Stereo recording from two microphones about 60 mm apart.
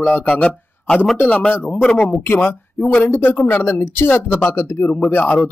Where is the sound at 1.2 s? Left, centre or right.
Centre.